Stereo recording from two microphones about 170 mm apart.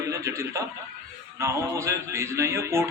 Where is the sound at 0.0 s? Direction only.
20° right (ahead or behind).